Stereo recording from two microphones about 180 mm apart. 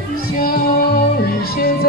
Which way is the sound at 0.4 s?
55° left (ahead or behind).